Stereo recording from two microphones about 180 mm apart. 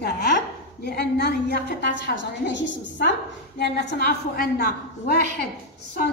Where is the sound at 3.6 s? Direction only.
65° left (ahead or behind).